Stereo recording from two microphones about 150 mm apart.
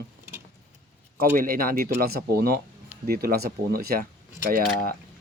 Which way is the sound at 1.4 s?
75° right (ahead or behind).